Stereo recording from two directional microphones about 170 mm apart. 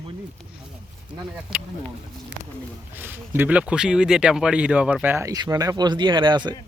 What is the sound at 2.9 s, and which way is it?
Speech, 10° right (ahead or behind).